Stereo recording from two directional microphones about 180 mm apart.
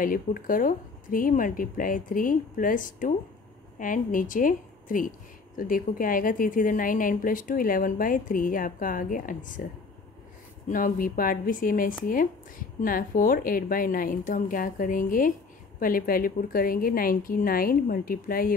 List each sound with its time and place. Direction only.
0.0 s a woman's voice: 50° left (ahead or behind)
10.7 s a woman's voice: 50° left (ahead or behind)